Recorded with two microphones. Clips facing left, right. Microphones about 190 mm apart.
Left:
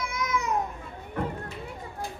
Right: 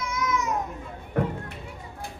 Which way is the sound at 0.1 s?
30° left (ahead or behind).